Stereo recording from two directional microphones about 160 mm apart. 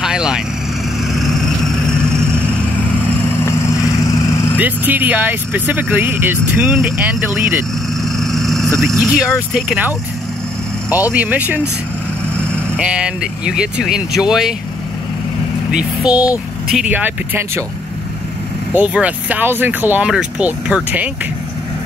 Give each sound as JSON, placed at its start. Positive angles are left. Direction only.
{"t": 0.0, "sound": "speech", "side_deg": -5}
{"t": 1.1, "sound": "vehicle", "side_deg": 0}
{"t": 3.9, "sound": "vehicle", "side_deg": 20}
{"t": 4.6, "sound": "speech", "side_deg": -10}
{"t": 8.0, "sound": "vehicle", "side_deg": 0}
{"t": 8.8, "sound": "speech", "side_deg": -5}
{"t": 12.7, "sound": "speech", "side_deg": -5}
{"t": 15.7, "sound": "speech", "side_deg": -5}
{"t": 18.7, "sound": "speech", "side_deg": -10}